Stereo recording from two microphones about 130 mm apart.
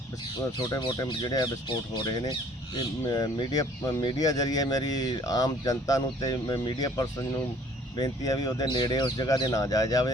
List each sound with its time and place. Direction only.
0.7 s speech: 30° left (ahead or behind)